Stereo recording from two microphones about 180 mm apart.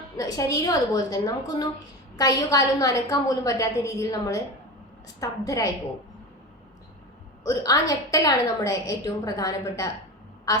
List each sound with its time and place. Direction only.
0.2 s a woman's voice: 20° left (ahead or behind)
7.4 s a woman's voice: 20° left (ahead or behind)